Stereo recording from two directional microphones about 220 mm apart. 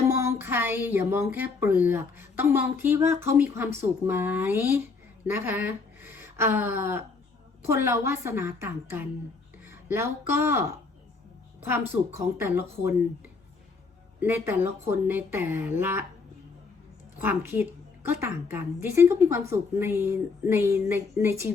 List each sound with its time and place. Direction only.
0.1 s a woman's voice: 10° right (ahead or behind)
14.2 s a woman's voice: 10° right (ahead or behind)
17.2 s a woman's voice: 10° right (ahead or behind)